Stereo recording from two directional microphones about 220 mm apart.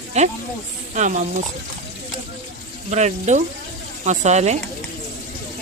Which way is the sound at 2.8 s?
30° right (ahead or behind).